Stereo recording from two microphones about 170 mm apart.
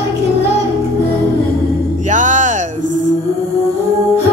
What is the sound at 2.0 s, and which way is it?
Music, 45° right (ahead or behind).